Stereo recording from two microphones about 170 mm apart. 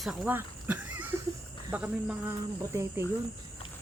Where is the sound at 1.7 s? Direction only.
10° right (ahead or behind).